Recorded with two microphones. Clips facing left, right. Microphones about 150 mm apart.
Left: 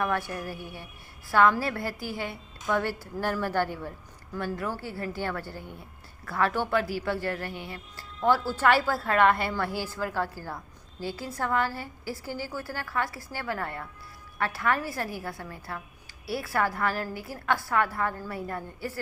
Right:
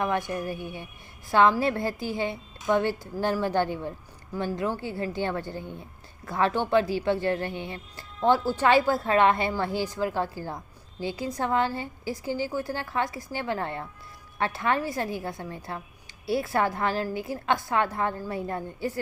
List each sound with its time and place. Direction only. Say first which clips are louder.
0.0 s a woman's voice: right 2 dB; 20° right (ahead or behind)